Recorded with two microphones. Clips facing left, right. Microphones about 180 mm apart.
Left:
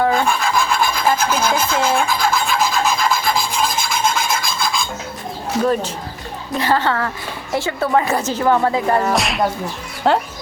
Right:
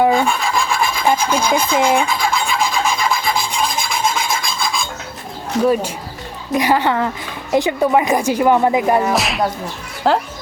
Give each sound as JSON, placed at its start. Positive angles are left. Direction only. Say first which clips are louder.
{"t": 0.1, "sound": "filing", "louder": "right 1 dB", "side_deg": 0}
{"t": 5.6, "sound": "a child's voice", "louder": "right 4 dB", "side_deg": -10}